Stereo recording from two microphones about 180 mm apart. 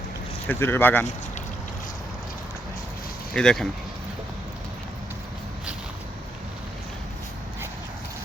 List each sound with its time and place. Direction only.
0.4 s speech: 10° left (ahead or behind)
3.3 s speech: 5° left (ahead or behind)